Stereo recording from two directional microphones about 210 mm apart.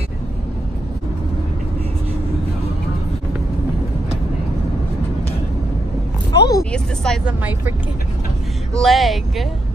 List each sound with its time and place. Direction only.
6.3 s vehicle: 50° left (ahead or behind)
6.7 s speech: 5° left (ahead or behind)
8.7 s speech: centre (ahead or behind)